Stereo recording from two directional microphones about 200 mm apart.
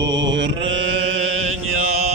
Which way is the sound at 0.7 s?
70° right (ahead or behind).